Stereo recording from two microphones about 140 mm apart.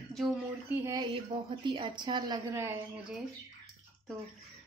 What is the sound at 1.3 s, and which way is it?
A woman's voice, 40° right (ahead or behind).